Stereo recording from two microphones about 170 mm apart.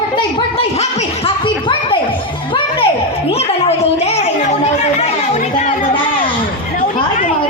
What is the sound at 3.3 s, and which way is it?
Chatter, 35° left (ahead or behind).